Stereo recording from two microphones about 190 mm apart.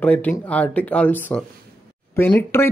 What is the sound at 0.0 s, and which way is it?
Speech, 10° left (ahead or behind).